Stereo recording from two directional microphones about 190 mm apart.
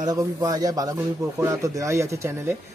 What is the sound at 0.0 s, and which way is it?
Speech, 20° right (ahead or behind).